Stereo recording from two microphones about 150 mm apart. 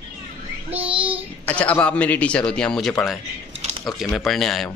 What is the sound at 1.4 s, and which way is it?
A man's voice, 10° left (ahead or behind).